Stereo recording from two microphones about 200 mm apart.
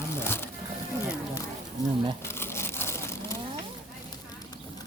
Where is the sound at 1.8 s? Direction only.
15° left (ahead or behind).